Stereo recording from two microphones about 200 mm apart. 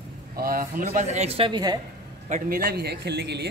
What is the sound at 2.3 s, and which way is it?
Speech, 45° right (ahead or behind).